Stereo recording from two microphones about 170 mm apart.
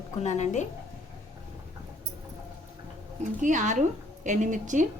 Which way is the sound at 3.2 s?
50° right (ahead or behind).